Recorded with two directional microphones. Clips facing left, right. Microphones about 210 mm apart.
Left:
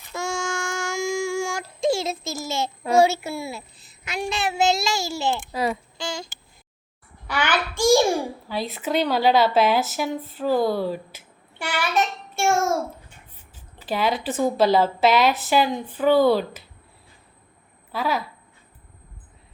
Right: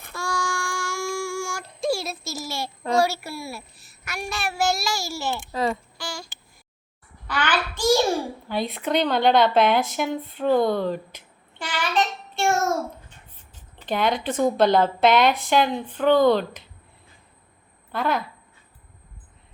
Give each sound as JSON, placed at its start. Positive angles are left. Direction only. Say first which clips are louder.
{"t": 0.1, "sound": "child singing", "louder": "left 2 dB", "side_deg": 25}
{"t": 1.9, "sound": "a sound", "louder": "left 2 dB", "side_deg": 25}
{"t": 3.0, "sound": "a child's voice", "louder": "left 8 dB", "side_deg": 20}
{"t": 5.5, "sound": "a child's voice", "louder": "even", "side_deg": 10}
{"t": 6.0, "sound": "a sound", "louder": "left 4 dB", "side_deg": 20}
{"t": 7.3, "sound": "a child's voice", "louder": "left 1 dB", "side_deg": 10}
{"t": 13.7, "sound": "a woman's voice", "louder": "even", "side_deg": 5}
{"t": 17.9, "sound": "a woman's voice", "louder": "right 1 dB", "side_deg": 5}